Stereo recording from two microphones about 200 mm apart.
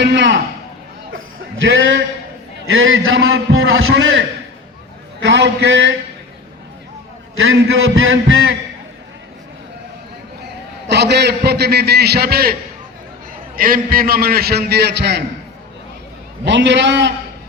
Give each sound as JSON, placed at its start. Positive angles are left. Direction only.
{"t": 0.0, "sound": "a man's voice", "side_deg": -60}
{"t": 1.1, "sound": "a sound", "side_deg": -70}
{"t": 2.7, "sound": "a man's voice", "side_deg": -80}
{"t": 5.2, "sound": "a man's voice", "side_deg": -65}
{"t": 7.4, "sound": "a man's voice", "side_deg": -90}
{"t": 10.8, "sound": "a man's voice", "side_deg": -60}
{"t": 13.6, "sound": "a man's voice", "side_deg": -45}
{"t": 16.4, "sound": "a man's voice", "side_deg": -60}